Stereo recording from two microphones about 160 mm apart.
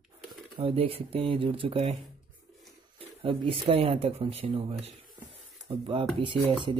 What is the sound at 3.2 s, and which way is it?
Speech, 35° right (ahead or behind).